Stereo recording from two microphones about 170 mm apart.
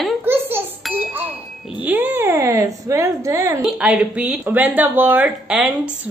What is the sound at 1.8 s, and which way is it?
Speech, 10° right (ahead or behind).